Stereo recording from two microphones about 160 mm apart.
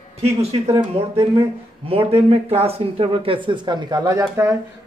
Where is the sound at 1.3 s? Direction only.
35° right (ahead or behind).